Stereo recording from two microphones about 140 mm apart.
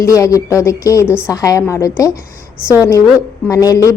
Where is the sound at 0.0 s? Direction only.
25° left (ahead or behind).